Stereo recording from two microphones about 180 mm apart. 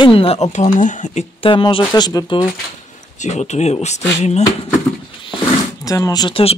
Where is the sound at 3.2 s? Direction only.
40° left (ahead or behind).